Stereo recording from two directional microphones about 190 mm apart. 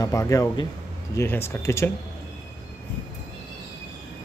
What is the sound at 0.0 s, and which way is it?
Speech, 15° left (ahead or behind).